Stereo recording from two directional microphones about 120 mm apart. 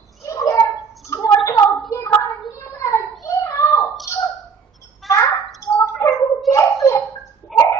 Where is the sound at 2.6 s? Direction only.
20° left (ahead or behind).